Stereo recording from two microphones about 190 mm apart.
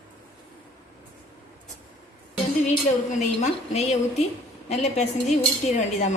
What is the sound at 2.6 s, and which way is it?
Speech, 40° left (ahead or behind).